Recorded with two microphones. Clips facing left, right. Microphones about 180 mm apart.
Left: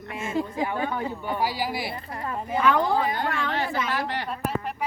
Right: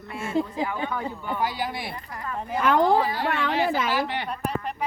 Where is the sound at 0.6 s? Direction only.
20° left (ahead or behind).